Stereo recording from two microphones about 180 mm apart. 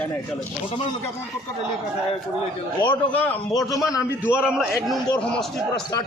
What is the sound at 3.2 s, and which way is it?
A man's voice, 15° left (ahead or behind).